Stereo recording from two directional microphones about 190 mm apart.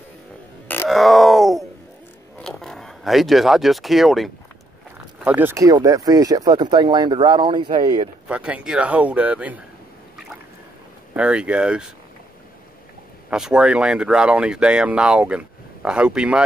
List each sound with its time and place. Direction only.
0.8 s a sound: centre (ahead or behind)
2.3 s speech: centre (ahead or behind); by 8.1 s 25° right (ahead or behind)
8.3 s speech: 5° right (ahead or behind)
11.1 s speech: 5° right (ahead or behind)
13.3 s speech: 5° right (ahead or behind)